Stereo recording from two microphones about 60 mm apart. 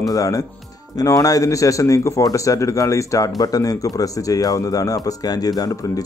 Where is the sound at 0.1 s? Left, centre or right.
Left.